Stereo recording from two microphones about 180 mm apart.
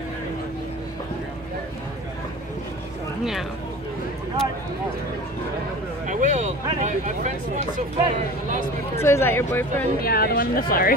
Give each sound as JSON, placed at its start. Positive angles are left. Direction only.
{"t": 6.0, "sound": "speech", "side_deg": -40}
{"t": 9.0, "sound": "speech", "side_deg": 15}
{"t": 9.9, "sound": "speech", "side_deg": 55}